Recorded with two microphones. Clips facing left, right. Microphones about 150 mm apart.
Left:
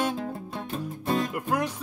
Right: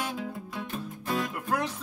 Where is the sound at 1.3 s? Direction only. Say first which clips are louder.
Left 3 dB; 10° left (ahead or behind).